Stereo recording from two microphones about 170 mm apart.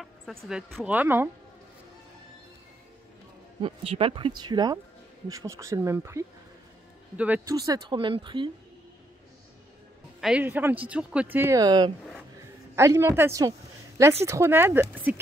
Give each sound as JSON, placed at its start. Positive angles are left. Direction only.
{"t": 0.0, "sound": "a sound", "side_deg": 0}
{"t": 0.5, "sound": "speech", "side_deg": 0}
{"t": 0.9, "sound": "speech", "side_deg": -15}
{"t": 3.6, "sound": "speech", "side_deg": -35}
{"t": 7.4, "sound": "speech", "side_deg": -20}
{"t": 10.2, "sound": "a woman's voice", "side_deg": -10}